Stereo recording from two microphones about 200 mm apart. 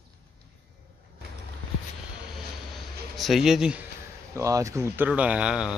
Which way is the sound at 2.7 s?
Centre (ahead or behind).